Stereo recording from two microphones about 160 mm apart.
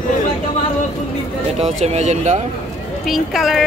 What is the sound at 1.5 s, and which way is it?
Speech, 40° right (ahead or behind).